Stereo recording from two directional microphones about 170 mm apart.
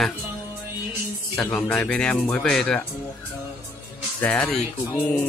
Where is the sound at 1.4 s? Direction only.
5° left (ahead or behind).